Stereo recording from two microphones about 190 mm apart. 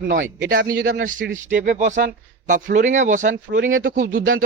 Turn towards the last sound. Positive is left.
turn(degrees=-50)  # may be behind; listen again after turning